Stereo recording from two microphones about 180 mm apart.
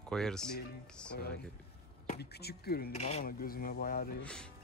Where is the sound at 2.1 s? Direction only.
60° left (ahead or behind).